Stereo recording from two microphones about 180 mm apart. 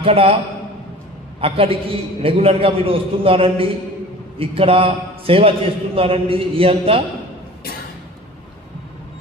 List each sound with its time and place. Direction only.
0.0 s a man's voice: 30° right (ahead or behind)
1.4 s a man's voice: 30° right (ahead or behind)